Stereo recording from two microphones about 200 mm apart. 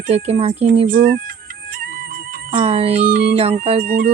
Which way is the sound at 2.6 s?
30° right (ahead or behind).